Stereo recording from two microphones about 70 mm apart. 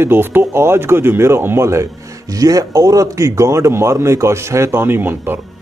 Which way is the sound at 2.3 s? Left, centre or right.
Right.